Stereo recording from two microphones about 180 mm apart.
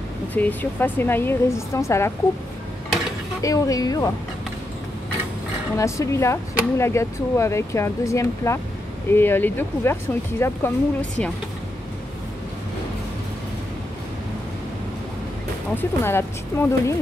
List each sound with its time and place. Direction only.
0.3 s speech: 10° left (ahead or behind)
3.4 s speech: 20° left (ahead or behind)
5.8 s speech: 15° left (ahead or behind)
15.7 s speech: 10° left (ahead or behind)